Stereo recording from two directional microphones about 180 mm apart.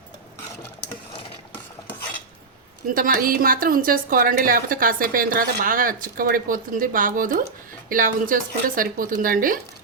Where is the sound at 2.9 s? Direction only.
50° right (ahead or behind).